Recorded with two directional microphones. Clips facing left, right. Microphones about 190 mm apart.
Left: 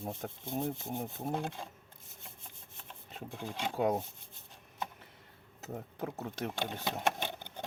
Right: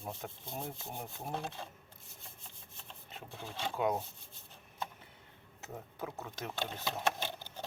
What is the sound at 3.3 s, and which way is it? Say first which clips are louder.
Speech: left 3 dB; 15° left (ahead or behind).